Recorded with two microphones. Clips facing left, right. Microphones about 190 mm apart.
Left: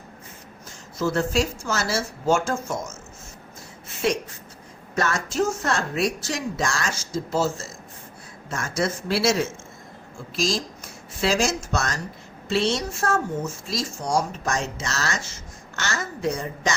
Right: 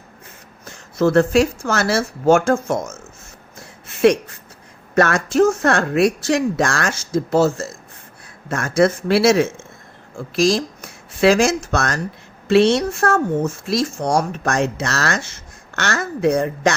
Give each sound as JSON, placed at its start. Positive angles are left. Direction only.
{"t": 0.6, "sound": "speech", "side_deg": -60}
{"t": 3.8, "sound": "a sound", "side_deg": -65}
{"t": 4.9, "sound": "speech", "side_deg": -65}